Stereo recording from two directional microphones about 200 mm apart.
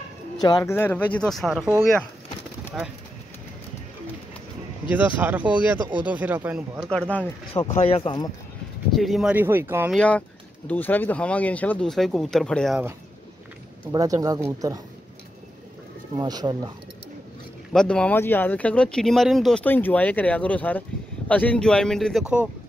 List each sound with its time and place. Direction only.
0.4 s speech: 20° left (ahead or behind); by 1.7 s centre (ahead or behind)
2.8 s speech: 5° right (ahead or behind)
4.9 s speech: 10° right (ahead or behind)
6.9 s speech: 5° left (ahead or behind)
7.7 s speech: 30° left (ahead or behind)
8.9 s speech: centre (ahead or behind)
9.9 s speech: 5° left (ahead or behind)
13.9 s speech: 15° right (ahead or behind)
16.2 s speech: 20° right (ahead or behind)
17.7 s speech: 5° left (ahead or behind)